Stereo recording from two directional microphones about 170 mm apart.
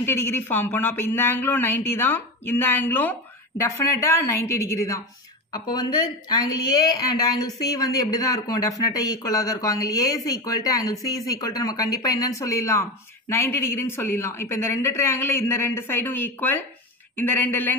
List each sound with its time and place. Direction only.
0.0 s speech: 15° left (ahead or behind)